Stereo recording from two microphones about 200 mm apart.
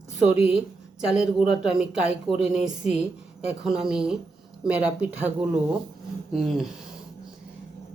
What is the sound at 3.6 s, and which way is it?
Speech, 5° right (ahead or behind).